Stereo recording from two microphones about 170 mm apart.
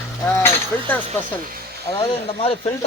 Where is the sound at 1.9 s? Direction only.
35° left (ahead or behind).